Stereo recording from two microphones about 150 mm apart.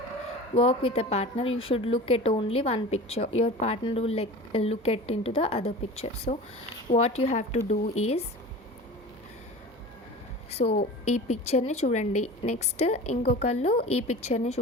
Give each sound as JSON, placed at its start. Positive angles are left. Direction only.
{"t": 0.5, "sound": "a woman's voice", "side_deg": 40}
{"t": 6.3, "sound": "speech", "side_deg": 80}
{"t": 6.9, "sound": "a woman's voice", "side_deg": 45}
{"t": 10.6, "sound": "a woman's voice", "side_deg": 55}